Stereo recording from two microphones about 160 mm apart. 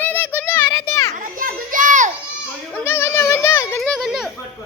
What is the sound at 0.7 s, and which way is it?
Children playing, 20° left (ahead or behind).